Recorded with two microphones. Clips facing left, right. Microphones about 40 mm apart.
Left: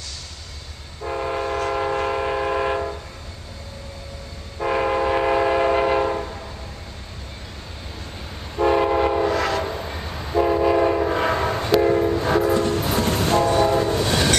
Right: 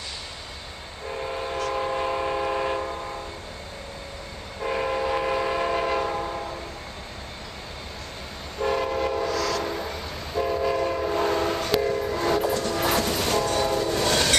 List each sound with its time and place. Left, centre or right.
1.0 s train: centre
4.6 s train: centre
8.5 s train: centre
11.1 s train: left
11.3 s train: left
12.3 s train: left
12.5 s train: left
13.5 s train: left
13.9 s train: centre